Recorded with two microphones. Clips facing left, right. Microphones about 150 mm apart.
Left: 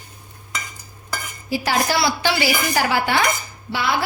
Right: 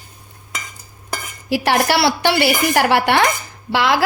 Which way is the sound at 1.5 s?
70° right (ahead or behind).